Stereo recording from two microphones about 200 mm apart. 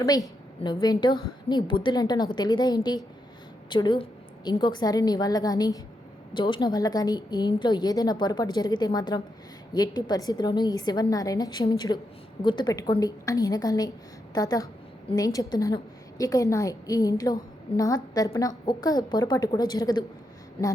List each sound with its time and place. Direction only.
0.6 s a woman's voice: 20° left (ahead or behind)